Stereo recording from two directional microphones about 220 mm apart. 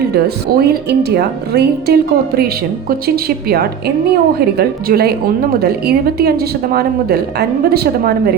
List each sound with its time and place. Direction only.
0.6 s speech: 45° right (ahead or behind)